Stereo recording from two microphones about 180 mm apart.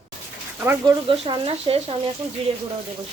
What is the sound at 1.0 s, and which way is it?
Speech, 30° right (ahead or behind).